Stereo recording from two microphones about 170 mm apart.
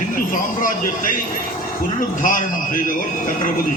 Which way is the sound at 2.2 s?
50° left (ahead or behind).